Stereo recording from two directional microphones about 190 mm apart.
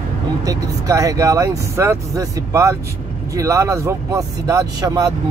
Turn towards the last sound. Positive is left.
turn(degrees=-20)  # may be behind; listen again after turning